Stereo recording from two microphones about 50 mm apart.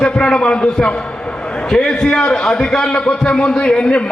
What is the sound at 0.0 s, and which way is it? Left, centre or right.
A man's voice, centre.